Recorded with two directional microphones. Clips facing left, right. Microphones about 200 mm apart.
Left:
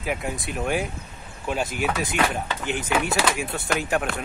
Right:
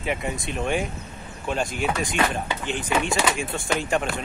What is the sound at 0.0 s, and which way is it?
Speech, centre (ahead or behind).